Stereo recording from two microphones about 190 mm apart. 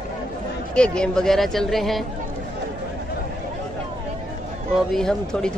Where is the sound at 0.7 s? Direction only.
5° left (ahead or behind).